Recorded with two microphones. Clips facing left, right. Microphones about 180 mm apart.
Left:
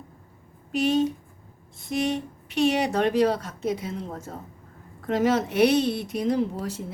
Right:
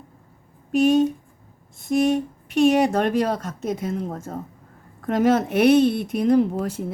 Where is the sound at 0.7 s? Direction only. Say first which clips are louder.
Right 5 dB; 50° right (ahead or behind).